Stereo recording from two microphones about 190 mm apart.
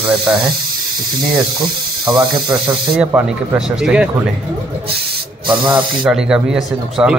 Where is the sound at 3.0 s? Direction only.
5° right (ahead or behind).